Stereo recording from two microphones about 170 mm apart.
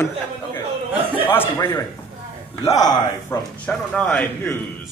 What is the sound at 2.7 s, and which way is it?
A man's voice, 20° left (ahead or behind).